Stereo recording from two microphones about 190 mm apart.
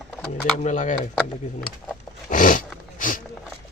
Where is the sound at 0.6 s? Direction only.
40° left (ahead or behind).